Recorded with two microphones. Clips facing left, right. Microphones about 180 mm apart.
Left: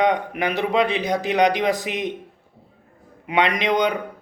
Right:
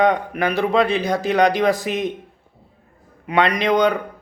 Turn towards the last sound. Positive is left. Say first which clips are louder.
# right 3 dB
turn(degrees=20)  # may be behind; listen again after turning